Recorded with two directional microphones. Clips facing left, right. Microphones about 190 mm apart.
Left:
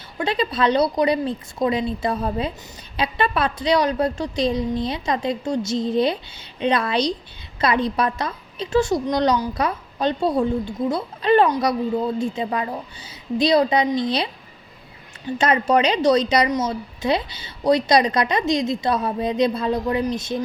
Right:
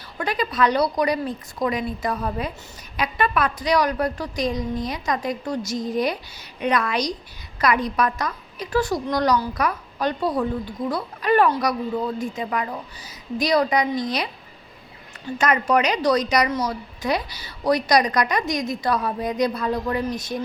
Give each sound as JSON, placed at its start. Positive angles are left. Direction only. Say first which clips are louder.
{"t": 0.2, "sound": "a woman's voice", "louder": "left 1 dB", "side_deg": 25}
{"t": 15.4, "sound": "a woman's voice", "louder": "left 2 dB", "side_deg": 30}